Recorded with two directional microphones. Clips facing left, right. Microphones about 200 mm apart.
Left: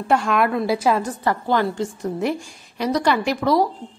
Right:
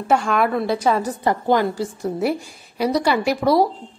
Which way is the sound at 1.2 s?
15° right (ahead or behind).